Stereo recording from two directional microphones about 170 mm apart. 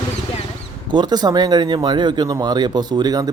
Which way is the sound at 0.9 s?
25° right (ahead or behind).